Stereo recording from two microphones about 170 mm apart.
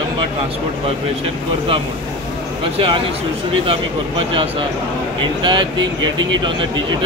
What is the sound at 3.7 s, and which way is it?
Speech, 30° right (ahead or behind).